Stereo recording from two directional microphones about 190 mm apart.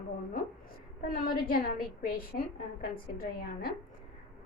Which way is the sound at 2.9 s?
50° left (ahead or behind).